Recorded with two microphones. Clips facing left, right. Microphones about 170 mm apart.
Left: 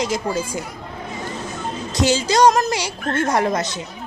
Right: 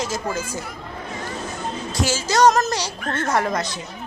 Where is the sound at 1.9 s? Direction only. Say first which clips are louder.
Left 4 dB; 20° left (ahead or behind).